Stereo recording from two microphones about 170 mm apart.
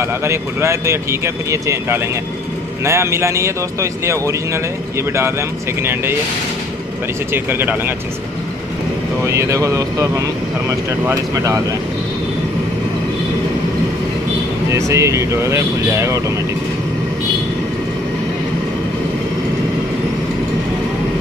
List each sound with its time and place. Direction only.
0.0 s speech: 15° right (ahead or behind)
5.8 s speech: 15° right (ahead or behind)
7.3 s speech: 10° right (ahead or behind)
9.2 s speech: 15° right (ahead or behind)
14.7 s speech: 15° right (ahead or behind)